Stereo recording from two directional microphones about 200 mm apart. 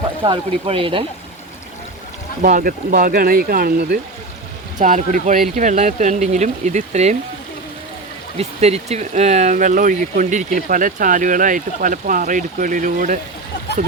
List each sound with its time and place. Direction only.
0.2 s speech: 25° right (ahead or behind)
2.4 s speech: 45° right (ahead or behind)
4.8 s speech: 40° right (ahead or behind)
8.4 s speech: 30° right (ahead or behind)